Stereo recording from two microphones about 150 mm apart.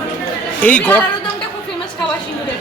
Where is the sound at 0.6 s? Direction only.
10° left (ahead or behind).